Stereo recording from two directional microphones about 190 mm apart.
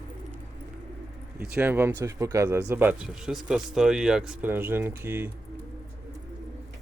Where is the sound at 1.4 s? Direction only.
10° right (ahead or behind).